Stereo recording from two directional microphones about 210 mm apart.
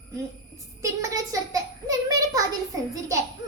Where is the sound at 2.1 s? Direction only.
15° right (ahead or behind).